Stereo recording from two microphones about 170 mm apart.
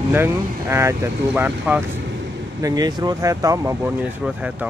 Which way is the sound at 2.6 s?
20° right (ahead or behind).